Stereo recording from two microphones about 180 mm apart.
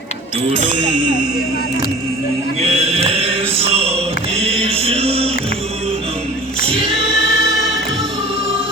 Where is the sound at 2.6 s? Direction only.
35° right (ahead or behind).